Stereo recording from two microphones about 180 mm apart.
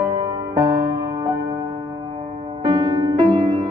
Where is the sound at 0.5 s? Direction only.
30° right (ahead or behind).